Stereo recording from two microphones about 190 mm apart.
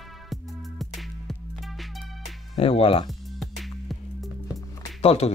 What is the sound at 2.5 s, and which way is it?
Speech, 30° left (ahead or behind).